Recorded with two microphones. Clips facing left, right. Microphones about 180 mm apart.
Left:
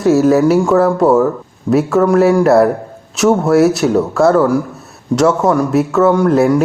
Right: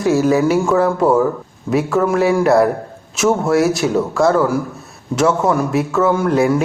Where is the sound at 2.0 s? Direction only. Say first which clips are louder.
Left 4 dB; centre (ahead or behind).